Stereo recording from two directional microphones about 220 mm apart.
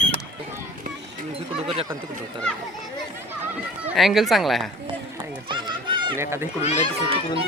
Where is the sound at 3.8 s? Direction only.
Centre (ahead or behind).